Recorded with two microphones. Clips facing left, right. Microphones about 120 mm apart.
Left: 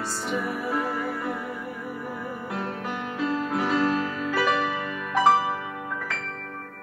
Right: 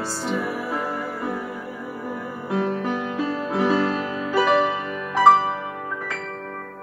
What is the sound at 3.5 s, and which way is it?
Music, 25° right (ahead or behind).